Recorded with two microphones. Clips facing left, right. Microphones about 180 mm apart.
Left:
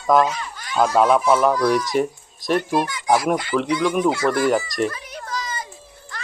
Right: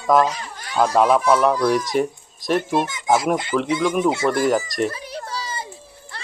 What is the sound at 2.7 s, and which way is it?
Speech, 25° right (ahead or behind).